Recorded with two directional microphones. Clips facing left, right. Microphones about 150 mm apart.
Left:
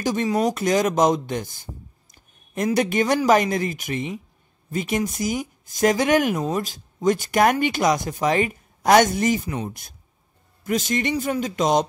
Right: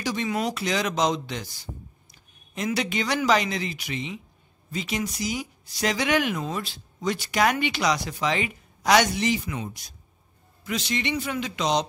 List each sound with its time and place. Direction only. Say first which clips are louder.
0.0 s speech: left 6 dB; 45° left (ahead or behind)